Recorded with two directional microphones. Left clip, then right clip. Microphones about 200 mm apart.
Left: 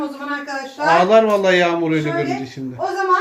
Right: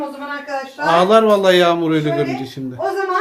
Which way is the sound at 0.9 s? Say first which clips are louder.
Right 1 dB; 20° right (ahead or behind).